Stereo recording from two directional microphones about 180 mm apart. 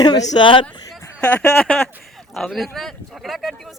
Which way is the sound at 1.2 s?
5° left (ahead or behind).